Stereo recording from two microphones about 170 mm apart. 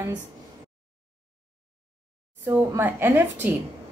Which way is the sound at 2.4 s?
10° right (ahead or behind).